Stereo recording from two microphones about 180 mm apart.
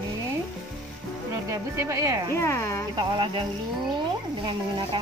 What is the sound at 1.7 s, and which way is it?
Speech, 15° right (ahead or behind).